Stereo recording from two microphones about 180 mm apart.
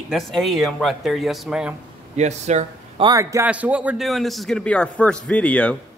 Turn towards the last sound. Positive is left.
turn(degrees=5)  # may be behind; listen again after turning